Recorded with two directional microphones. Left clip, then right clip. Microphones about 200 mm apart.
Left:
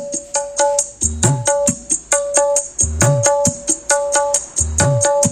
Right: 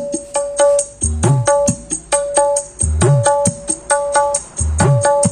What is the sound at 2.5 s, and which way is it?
Music, 40° left (ahead or behind).